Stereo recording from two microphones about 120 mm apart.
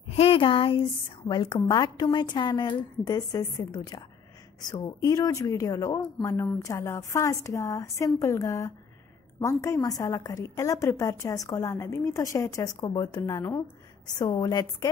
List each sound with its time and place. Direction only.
0.1 s a woman's voice: 55° left (ahead or behind); by 14.9 s 35° left (ahead or behind)